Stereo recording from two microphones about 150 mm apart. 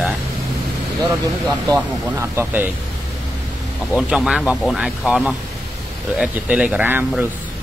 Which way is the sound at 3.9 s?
5° right (ahead or behind).